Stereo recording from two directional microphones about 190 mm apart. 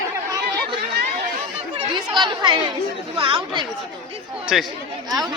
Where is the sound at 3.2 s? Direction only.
25° right (ahead or behind).